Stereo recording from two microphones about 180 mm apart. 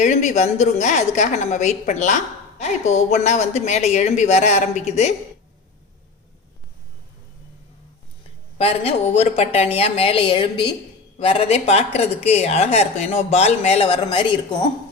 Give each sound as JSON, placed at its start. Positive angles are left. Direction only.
{"t": 0.0, "sound": "speech", "side_deg": 40}
{"t": 8.5, "sound": "speech", "side_deg": 35}